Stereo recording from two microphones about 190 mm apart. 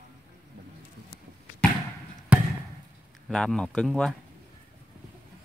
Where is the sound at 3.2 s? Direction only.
5° left (ahead or behind).